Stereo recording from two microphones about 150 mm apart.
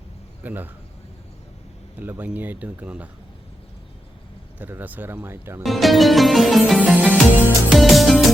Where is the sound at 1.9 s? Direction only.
10° right (ahead or behind).